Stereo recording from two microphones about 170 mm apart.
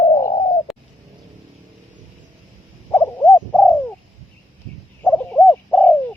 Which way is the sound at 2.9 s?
15° left (ahead or behind).